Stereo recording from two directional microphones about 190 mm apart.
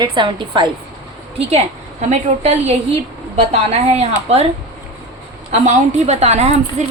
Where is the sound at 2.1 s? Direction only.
35° right (ahead or behind).